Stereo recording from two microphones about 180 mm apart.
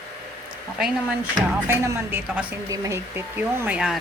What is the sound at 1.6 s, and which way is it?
Speech, 15° right (ahead or behind).